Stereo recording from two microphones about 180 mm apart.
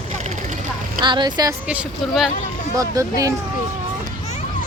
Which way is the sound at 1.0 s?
25° right (ahead or behind).